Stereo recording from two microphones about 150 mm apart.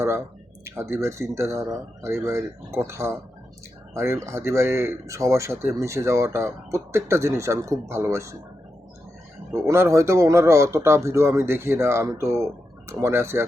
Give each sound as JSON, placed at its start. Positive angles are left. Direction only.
{"t": 0.6, "sound": "a man's voice", "side_deg": -15}
{"t": 9.5, "sound": "a man's voice", "side_deg": -15}